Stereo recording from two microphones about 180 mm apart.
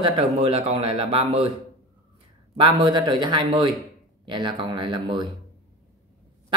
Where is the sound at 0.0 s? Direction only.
30° right (ahead or behind).